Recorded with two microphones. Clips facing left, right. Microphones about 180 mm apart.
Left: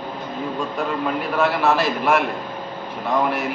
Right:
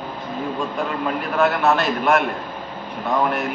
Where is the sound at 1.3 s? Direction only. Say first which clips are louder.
Right 1 dB; centre (ahead or behind).